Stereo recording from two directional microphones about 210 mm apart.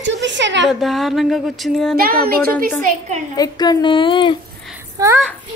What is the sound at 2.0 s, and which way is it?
Speech, 45° right (ahead or behind).